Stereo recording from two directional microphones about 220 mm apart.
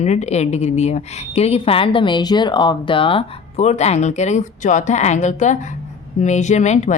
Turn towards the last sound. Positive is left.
turn(degrees=30)  # may be behind; listen again after turning